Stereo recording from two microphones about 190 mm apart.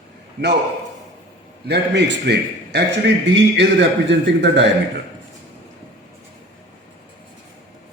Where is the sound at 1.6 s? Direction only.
60° right (ahead or behind).